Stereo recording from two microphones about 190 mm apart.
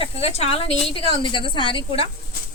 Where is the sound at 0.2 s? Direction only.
30° left (ahead or behind).